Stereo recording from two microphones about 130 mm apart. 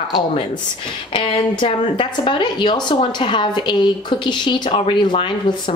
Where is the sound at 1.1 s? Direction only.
40° left (ahead or behind).